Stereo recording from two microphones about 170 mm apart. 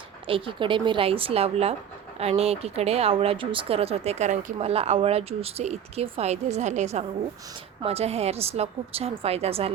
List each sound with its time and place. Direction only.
0.3 s speech: 30° right (ahead or behind)